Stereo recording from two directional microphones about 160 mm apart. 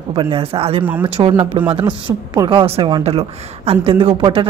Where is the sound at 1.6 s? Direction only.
35° right (ahead or behind).